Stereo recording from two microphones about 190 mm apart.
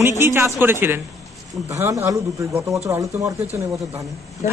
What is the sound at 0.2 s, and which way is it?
Speech, 10° right (ahead or behind).